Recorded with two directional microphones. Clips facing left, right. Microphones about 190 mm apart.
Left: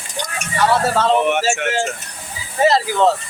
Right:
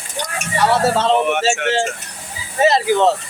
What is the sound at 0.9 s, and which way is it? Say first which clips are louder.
Speech: right 1 dB; 25° right (ahead or behind).